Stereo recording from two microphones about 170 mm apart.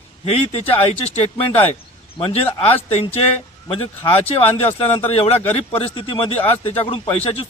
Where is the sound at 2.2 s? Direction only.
35° left (ahead or behind).